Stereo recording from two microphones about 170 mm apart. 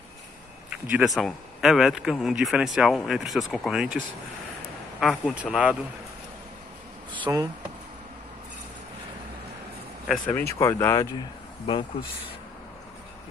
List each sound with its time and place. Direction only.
0.9 s speech: centre (ahead or behind)
5.0 s speech: centre (ahead or behind)
7.3 s speech: 15° right (ahead or behind)
10.0 s speech: 5° left (ahead or behind)
10.6 s speech: 15° left (ahead or behind)
11.6 s speech: 30° left (ahead or behind)